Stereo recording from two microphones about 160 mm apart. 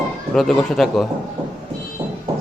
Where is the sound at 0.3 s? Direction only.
Centre (ahead or behind).